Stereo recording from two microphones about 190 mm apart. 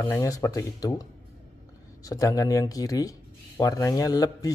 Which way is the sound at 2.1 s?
15° left (ahead or behind).